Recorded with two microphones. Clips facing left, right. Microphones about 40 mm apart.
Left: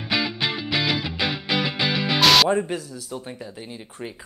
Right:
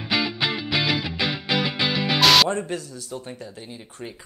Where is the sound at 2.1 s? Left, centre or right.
Centre.